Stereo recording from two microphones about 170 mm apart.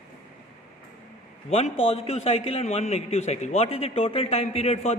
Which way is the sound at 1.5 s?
35° left (ahead or behind).